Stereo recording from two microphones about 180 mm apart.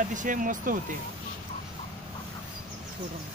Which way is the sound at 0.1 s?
45° right (ahead or behind).